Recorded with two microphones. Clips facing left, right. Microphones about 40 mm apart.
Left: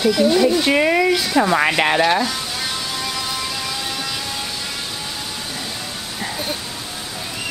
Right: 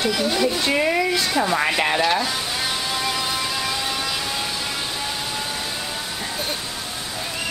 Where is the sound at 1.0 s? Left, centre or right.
Centre.